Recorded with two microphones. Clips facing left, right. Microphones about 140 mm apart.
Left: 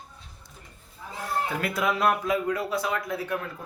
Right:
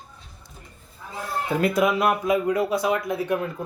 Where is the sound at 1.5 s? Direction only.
20° right (ahead or behind).